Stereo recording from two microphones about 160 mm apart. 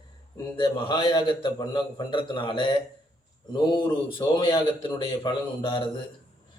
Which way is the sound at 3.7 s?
30° left (ahead or behind).